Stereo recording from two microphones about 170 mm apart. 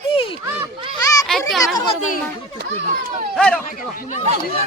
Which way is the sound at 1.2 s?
Centre (ahead or behind).